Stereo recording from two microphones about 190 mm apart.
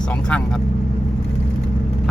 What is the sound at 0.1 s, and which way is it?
Speech, 5° left (ahead or behind).